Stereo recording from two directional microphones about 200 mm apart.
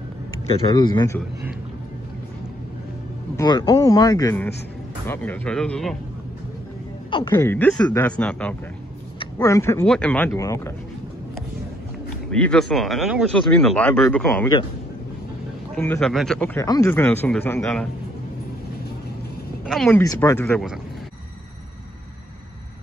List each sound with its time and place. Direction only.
0.5 s speech: 20° left (ahead or behind)
3.3 s speech: 20° left (ahead or behind); by 5.9 s centre (ahead or behind)
7.2 s speech: 10° left (ahead or behind)
12.3 s speech: 5° left (ahead or behind)
15.7 s speech: 5° left (ahead or behind)
19.6 s a sound: centre (ahead or behind)
19.9 s speech: 15° left (ahead or behind)